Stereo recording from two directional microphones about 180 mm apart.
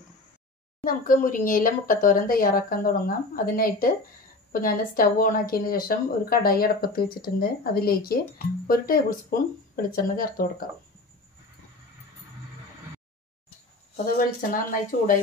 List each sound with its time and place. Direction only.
0.8 s speech: 50° left (ahead or behind)
14.1 s speech: 50° left (ahead or behind)